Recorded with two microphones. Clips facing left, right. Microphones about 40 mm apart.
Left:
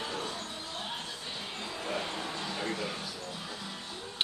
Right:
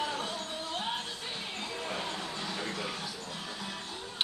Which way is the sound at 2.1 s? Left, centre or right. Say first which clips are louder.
Left 1 dB; centre.